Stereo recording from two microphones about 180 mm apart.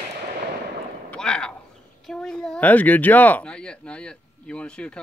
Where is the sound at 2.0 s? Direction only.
Centre (ahead or behind).